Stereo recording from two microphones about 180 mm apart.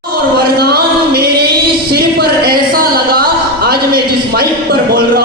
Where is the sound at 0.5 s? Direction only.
60° right (ahead or behind).